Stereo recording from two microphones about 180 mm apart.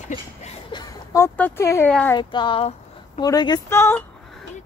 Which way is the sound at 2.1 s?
25° left (ahead or behind).